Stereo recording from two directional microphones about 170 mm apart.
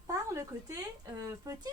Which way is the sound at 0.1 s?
20° right (ahead or behind).